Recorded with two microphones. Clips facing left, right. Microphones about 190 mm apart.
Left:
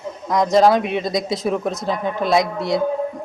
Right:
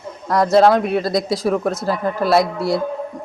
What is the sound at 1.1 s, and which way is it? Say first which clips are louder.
Speech: right 2 dB; 20° left (ahead or behind).